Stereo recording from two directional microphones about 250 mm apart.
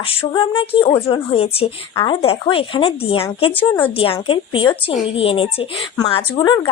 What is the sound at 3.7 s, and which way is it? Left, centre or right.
A woman's voice, centre.